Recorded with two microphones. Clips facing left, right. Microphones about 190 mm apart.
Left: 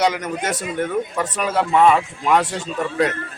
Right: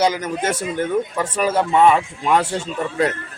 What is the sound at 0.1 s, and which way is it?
Speech, 30° right (ahead or behind).